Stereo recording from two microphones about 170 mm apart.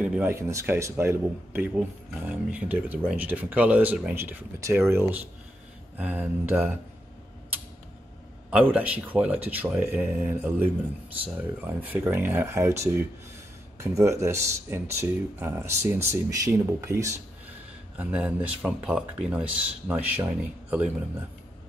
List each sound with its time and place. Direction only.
0.0 s speech: 10° right (ahead or behind)
8.5 s speech: 10° right (ahead or behind)
17.9 s speech: 10° right (ahead or behind)